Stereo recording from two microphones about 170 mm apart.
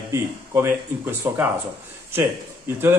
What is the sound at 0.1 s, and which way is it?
A man's voice, 15° right (ahead or behind).